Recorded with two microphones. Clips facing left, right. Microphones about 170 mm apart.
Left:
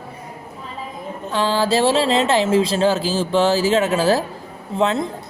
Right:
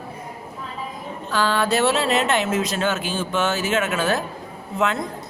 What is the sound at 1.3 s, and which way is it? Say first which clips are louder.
Speech: left 2 dB; 25° left (ahead or behind).